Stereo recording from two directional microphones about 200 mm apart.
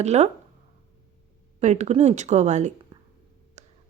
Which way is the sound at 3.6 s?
35° right (ahead or behind).